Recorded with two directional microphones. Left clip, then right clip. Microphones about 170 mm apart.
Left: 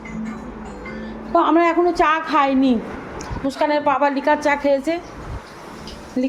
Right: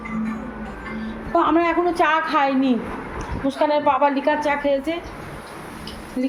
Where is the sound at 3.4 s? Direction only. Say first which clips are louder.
Even; 20° left (ahead or behind).